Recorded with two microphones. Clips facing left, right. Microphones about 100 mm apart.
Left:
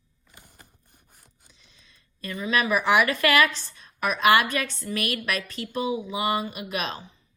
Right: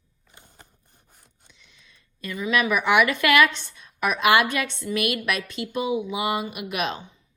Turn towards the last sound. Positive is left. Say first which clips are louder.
# right 3 dB
turn(degrees=35)  # may be behind; listen again after turning